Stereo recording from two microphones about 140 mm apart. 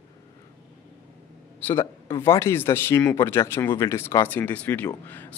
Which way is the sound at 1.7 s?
20° left (ahead or behind).